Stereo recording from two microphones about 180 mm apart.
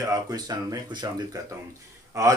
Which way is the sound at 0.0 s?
20° right (ahead or behind).